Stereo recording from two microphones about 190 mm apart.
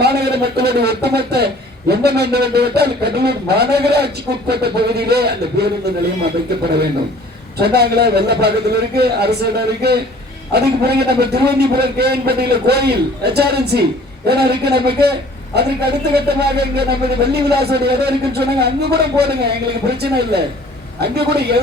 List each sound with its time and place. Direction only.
0.0 s a man's voice: 60° right (ahead or behind)
7.6 s speech: 55° right (ahead or behind)